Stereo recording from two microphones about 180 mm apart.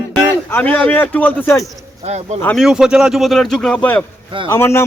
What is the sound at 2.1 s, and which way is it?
Speech, 35° right (ahead or behind).